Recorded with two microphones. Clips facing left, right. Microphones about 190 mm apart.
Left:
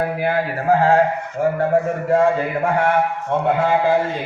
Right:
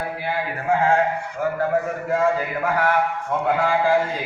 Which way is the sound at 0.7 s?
35° left (ahead or behind).